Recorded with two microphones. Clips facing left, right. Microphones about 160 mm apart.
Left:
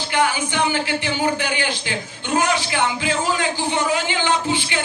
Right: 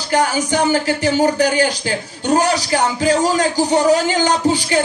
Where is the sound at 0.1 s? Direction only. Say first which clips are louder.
Right 5 dB; 40° right (ahead or behind).